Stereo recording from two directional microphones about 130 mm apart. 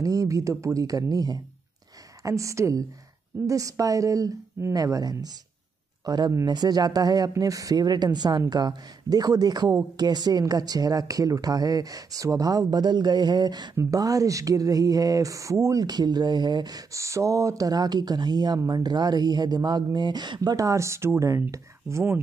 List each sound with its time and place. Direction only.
0.0 s speech: 25° right (ahead or behind)